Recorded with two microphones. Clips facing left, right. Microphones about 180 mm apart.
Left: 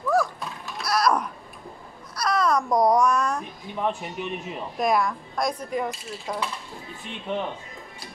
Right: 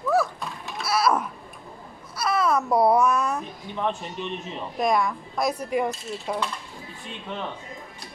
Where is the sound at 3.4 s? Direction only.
10° left (ahead or behind); by 6.4 s 5° right (ahead or behind).